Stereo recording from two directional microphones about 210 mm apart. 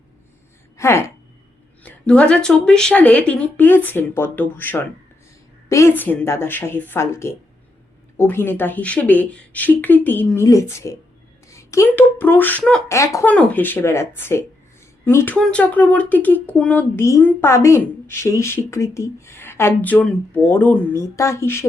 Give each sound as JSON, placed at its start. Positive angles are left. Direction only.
{"t": 0.8, "sound": "speech", "side_deg": 15}